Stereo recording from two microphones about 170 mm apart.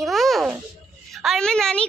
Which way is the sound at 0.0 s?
Centre (ahead or behind).